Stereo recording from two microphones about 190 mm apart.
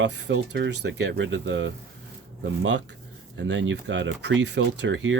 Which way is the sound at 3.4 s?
70° right (ahead or behind).